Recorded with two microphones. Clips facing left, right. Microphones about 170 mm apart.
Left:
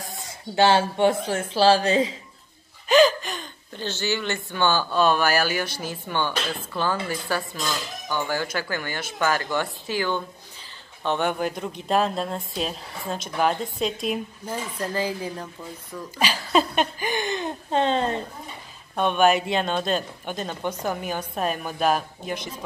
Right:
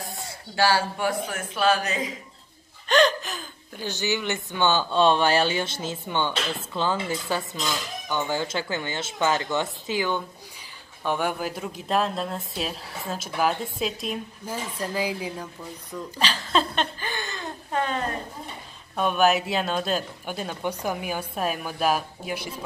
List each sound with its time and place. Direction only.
0.6 s speech: 25° left (ahead or behind)
2.9 s a sound: 5° left (ahead or behind)
3.8 s speech: 15° right (ahead or behind)
11.1 s speech: 5° right (ahead or behind)
16.2 s speech: 10° left (ahead or behind)
18.9 s speech: 5° right (ahead or behind)